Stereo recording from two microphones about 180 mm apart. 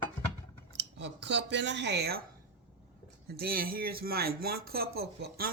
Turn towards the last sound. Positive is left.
turn(degrees=-60)  # may be behind; listen again after turning